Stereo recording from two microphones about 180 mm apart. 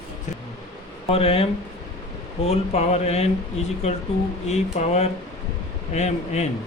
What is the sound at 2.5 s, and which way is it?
Speech, 35° left (ahead or behind).